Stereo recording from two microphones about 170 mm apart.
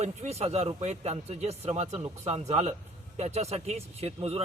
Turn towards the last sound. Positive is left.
turn(degrees=-35)  # may be behind; listen again after turning